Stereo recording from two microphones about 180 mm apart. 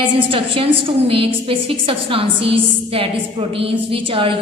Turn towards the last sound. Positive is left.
turn(degrees=-30)  # may be behind; listen again after turning